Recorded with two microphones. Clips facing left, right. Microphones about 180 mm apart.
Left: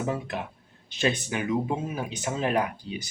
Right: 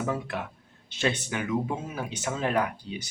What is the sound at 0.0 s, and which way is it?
Speech, 20° left (ahead or behind).